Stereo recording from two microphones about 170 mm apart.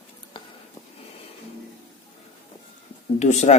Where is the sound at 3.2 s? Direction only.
45° left (ahead or behind).